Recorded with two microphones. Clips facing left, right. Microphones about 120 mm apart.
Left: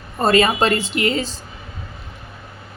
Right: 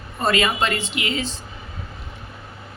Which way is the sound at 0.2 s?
35° left (ahead or behind).